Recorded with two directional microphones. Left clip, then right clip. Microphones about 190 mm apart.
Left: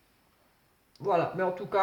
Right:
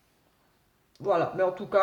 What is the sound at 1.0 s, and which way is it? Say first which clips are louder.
Speech: right 2 dB; 45° right (ahead or behind).